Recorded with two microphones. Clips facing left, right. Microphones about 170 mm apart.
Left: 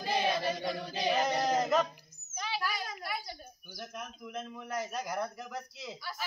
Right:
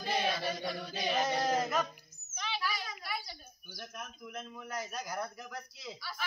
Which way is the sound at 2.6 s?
50° left (ahead or behind).